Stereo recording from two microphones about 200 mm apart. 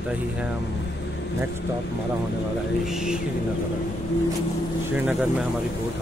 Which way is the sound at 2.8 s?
5° right (ahead or behind).